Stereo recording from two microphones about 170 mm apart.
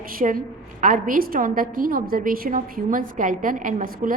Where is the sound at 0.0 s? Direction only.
55° right (ahead or behind).